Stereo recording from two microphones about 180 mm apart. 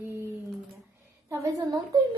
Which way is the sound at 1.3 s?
20° right (ahead or behind).